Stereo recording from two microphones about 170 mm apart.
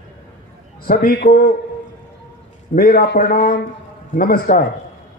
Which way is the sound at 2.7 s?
60° left (ahead or behind).